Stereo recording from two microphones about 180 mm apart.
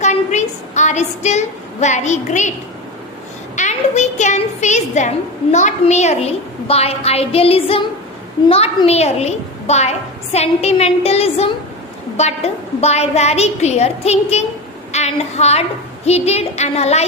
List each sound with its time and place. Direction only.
0.0 s a sound: 40° left (ahead or behind)
3.5 s a woman's voice: 40° left (ahead or behind)
14.9 s child singing: 40° left (ahead or behind)
16.0 s a woman's voice: 35° left (ahead or behind)